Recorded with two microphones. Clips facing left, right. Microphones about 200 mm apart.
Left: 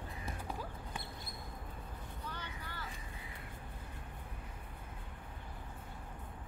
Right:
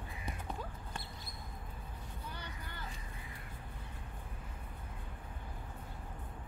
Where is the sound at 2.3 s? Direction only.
10° right (ahead or behind).